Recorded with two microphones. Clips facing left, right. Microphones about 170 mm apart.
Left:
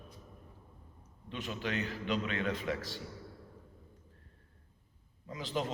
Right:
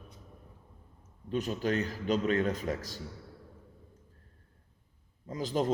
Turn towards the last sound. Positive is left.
turn(degrees=-40)  # may be behind; listen again after turning